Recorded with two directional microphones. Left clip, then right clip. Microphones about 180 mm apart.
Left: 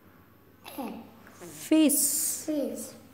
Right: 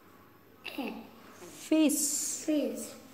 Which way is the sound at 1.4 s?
45° left (ahead or behind).